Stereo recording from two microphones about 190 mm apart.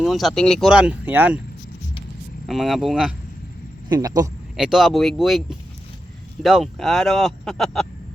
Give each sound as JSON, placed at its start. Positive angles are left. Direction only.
{"t": 0.0, "sound": "speech", "side_deg": 0}
{"t": 2.5, "sound": "speech", "side_deg": 0}
{"t": 3.8, "sound": "speech", "side_deg": -20}
{"t": 4.5, "sound": "speech", "side_deg": 0}